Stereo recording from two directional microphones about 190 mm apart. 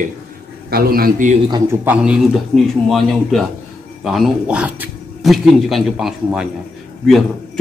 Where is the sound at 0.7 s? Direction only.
50° right (ahead or behind).